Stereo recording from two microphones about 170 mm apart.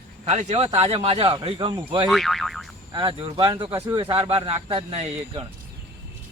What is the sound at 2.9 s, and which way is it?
Speech, 30° right (ahead or behind).